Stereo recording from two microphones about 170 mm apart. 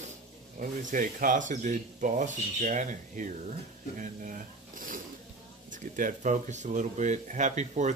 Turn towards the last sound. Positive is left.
turn(degrees=-45)  # may be behind; listen again after turning